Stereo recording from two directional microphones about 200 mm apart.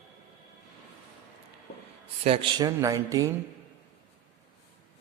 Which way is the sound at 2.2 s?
25° right (ahead or behind).